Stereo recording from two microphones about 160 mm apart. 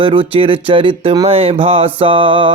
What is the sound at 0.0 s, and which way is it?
Speech, 35° right (ahead or behind).